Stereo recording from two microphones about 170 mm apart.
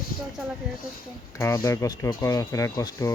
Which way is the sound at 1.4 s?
15° left (ahead or behind).